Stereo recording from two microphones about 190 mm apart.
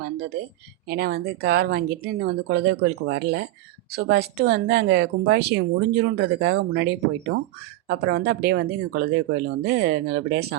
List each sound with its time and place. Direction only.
0.0 s speech: 60° right (ahead or behind)